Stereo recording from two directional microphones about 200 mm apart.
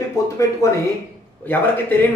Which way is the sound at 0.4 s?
15° left (ahead or behind).